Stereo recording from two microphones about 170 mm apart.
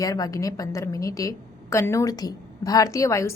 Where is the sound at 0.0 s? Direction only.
20° left (ahead or behind).